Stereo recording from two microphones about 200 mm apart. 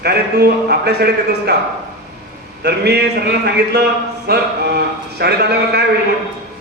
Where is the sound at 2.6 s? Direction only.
55° right (ahead or behind).